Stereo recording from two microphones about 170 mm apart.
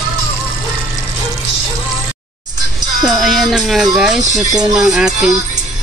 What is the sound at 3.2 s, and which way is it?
Speech, centre (ahead or behind).